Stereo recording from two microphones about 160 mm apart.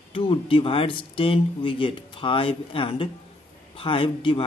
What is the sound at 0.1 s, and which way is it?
Speech, 35° left (ahead or behind).